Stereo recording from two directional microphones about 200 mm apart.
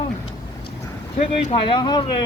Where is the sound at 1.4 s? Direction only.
20° left (ahead or behind).